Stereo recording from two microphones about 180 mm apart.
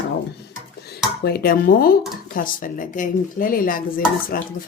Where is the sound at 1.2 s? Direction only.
55° left (ahead or behind).